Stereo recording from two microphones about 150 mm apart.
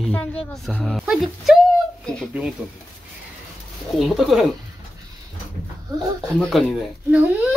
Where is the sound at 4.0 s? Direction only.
Centre (ahead or behind).